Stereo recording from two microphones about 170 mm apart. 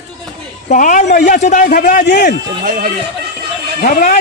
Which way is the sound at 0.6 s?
50° left (ahead or behind).